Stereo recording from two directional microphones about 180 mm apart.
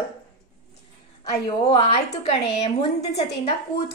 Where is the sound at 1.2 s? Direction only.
30° left (ahead or behind).